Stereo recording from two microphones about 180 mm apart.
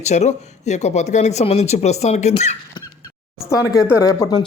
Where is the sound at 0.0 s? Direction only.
40° left (ahead or behind).